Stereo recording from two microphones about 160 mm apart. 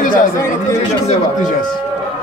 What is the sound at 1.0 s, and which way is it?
Speech, 50° left (ahead or behind).